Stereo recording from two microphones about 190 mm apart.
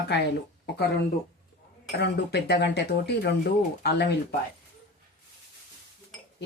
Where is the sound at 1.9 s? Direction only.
65° left (ahead or behind).